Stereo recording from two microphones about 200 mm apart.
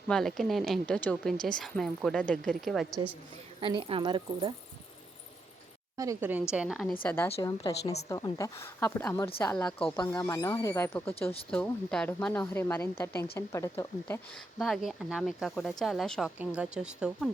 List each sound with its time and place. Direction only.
0.1 s a woman's voice: centre (ahead or behind)
3.6 s speech: 25° right (ahead or behind)
6.0 s a woman's voice: 15° right (ahead or behind)
7.0 s a woman's voice: 10° left (ahead or behind)